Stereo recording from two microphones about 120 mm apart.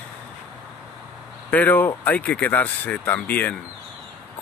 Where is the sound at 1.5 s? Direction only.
15° left (ahead or behind).